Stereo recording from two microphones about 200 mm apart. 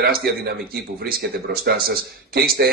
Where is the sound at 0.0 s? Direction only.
50° right (ahead or behind).